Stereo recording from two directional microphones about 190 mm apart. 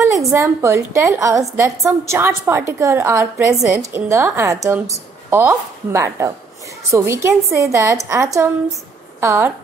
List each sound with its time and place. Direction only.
0.1 s a woman's voice: 15° right (ahead or behind)